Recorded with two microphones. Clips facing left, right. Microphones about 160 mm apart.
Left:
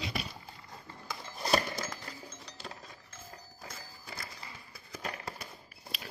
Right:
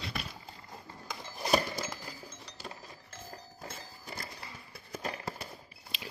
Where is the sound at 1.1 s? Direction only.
5° right (ahead or behind).